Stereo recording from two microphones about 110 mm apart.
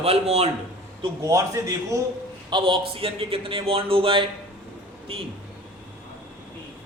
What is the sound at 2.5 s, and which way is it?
A man's voice, 55° right (ahead or behind).